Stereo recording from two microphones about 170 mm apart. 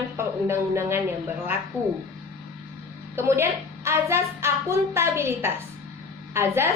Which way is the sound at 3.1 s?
15° right (ahead or behind).